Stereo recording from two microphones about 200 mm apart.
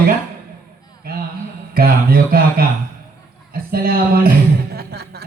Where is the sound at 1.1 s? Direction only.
50° right (ahead or behind).